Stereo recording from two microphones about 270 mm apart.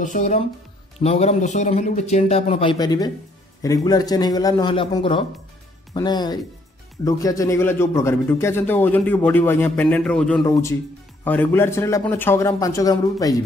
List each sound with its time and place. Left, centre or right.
0.0 s a man's voice: left